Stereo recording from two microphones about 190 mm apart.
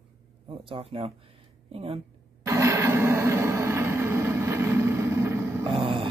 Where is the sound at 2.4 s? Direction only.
15° right (ahead or behind).